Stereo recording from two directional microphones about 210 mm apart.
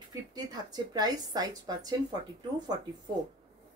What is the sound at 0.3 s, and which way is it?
A woman's voice, 20° right (ahead or behind).